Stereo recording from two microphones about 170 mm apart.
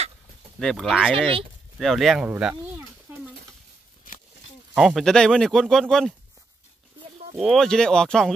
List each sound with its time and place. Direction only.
0.6 s speech: centre (ahead or behind)
4.7 s speech: centre (ahead or behind)
7.3 s speech: centre (ahead or behind)